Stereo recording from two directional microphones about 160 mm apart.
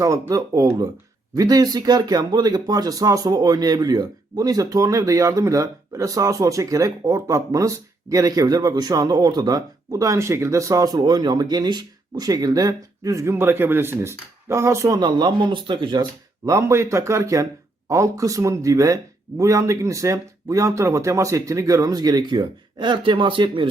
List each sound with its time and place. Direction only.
0.0 s speech: 20° right (ahead or behind)
16.5 s speech: 20° right (ahead or behind)